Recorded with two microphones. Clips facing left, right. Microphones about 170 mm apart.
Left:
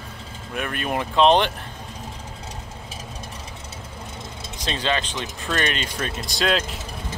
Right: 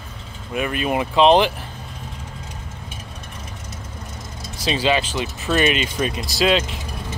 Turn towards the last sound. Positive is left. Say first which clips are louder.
# right 4 dB
turn(degrees=0)  # may be behind; listen again after turning